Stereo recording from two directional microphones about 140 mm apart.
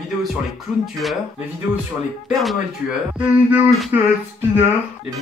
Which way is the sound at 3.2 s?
10° right (ahead or behind).